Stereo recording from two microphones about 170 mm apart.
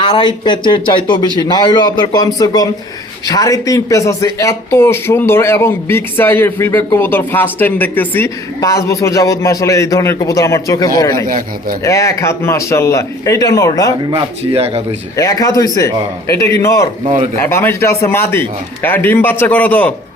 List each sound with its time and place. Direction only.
0.0 s speech: 30° left (ahead or behind)
11.3 s speech: 55° right (ahead or behind)
11.8 s speech: 20° left (ahead or behind)
14.1 s speech: 35° right (ahead or behind)
15.1 s speech: 20° left (ahead or behind)